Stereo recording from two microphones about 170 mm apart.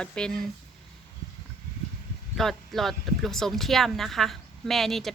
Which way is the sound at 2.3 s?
Centre (ahead or behind).